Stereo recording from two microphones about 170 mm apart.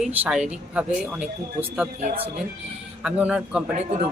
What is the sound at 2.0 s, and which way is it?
Speech, 40° right (ahead or behind).